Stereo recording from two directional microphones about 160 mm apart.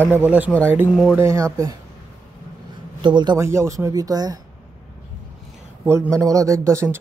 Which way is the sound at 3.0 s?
25° right (ahead or behind).